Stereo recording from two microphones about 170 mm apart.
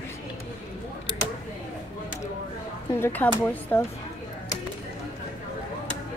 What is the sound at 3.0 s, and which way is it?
Speech, 10° left (ahead or behind).